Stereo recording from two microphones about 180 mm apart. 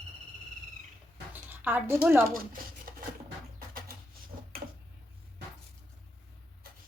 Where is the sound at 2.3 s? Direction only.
55° right (ahead or behind).